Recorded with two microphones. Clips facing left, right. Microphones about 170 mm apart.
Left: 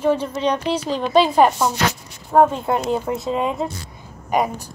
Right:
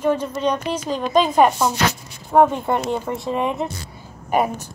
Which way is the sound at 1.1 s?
5° left (ahead or behind).